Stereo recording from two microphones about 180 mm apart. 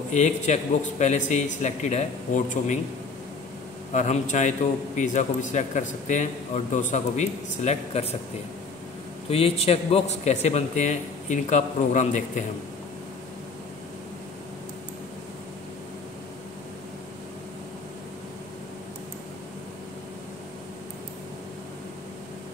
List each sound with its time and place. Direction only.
0.1 s a man's voice: 40° left (ahead or behind)
3.9 s a man's voice: 40° left (ahead or behind)
9.3 s a man's voice: 35° left (ahead or behind)